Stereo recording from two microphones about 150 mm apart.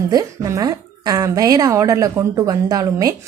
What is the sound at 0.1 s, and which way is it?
A woman's voice, 25° right (ahead or behind).